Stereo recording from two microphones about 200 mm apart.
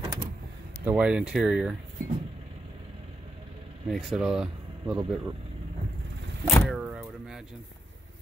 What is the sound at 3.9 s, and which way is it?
Speech, centre (ahead or behind).